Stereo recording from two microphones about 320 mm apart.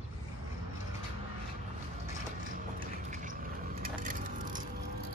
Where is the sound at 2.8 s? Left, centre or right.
Right.